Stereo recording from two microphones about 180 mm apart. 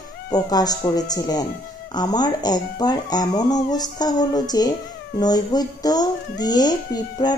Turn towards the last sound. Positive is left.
turn(degrees=25)  # may be behind; listen again after turning